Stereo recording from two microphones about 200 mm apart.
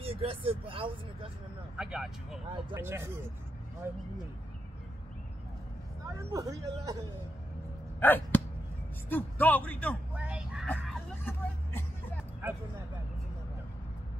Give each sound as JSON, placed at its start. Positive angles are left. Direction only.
{"t": 0.0, "sound": "speech", "side_deg": -30}
{"t": 1.8, "sound": "speech", "side_deg": -5}
{"t": 6.1, "sound": "speech", "side_deg": -15}
{"t": 8.0, "sound": "a man's voice", "side_deg": 10}
{"t": 10.1, "sound": "speech", "side_deg": -5}
{"t": 10.7, "sound": "vehicle", "side_deg": 10}